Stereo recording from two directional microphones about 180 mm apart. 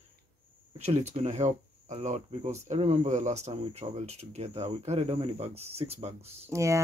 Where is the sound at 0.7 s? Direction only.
35° right (ahead or behind).